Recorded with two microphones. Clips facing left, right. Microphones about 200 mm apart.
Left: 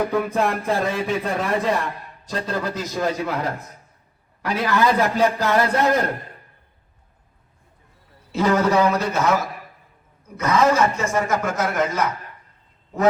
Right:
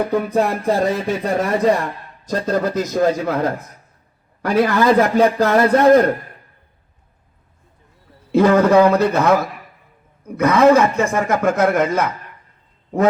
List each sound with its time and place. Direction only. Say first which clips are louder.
0.1 s speech: right 3 dB; 40° right (ahead or behind)
8.3 s speech: right 6 dB; 55° right (ahead or behind)